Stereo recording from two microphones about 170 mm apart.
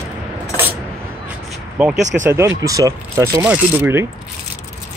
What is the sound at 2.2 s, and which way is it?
Speech, 15° right (ahead or behind).